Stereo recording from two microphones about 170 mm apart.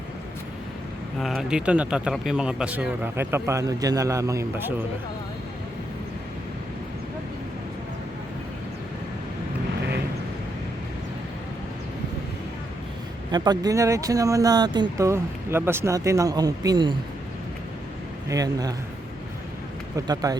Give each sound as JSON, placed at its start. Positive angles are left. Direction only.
{"t": 1.2, "sound": "speech", "side_deg": 0}
{"t": 13.3, "sound": "speech", "side_deg": -25}
{"t": 18.3, "sound": "speech", "side_deg": -20}
{"t": 20.2, "sound": "speech", "side_deg": -20}